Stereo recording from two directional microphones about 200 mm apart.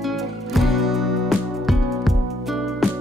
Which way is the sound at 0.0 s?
Centre (ahead or behind).